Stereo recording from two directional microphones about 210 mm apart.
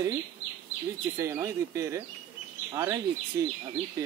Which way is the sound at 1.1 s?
15° right (ahead or behind).